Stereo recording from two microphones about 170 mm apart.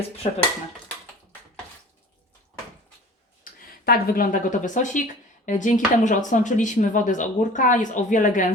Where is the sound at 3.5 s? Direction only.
55° left (ahead or behind).